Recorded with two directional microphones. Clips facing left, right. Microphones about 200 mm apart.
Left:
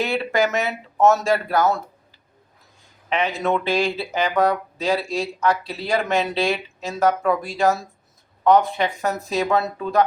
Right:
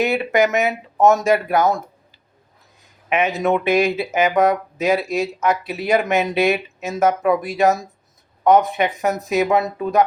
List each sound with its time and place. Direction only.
0.0 s speech: 15° right (ahead or behind)
3.4 s speech: 20° right (ahead or behind)